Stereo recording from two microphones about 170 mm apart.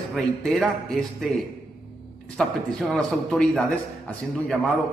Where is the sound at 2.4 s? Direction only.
5° left (ahead or behind).